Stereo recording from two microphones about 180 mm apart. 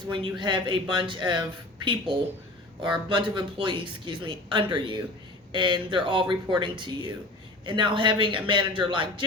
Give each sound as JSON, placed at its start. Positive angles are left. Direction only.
{"t": 0.1, "sound": "speech", "side_deg": -25}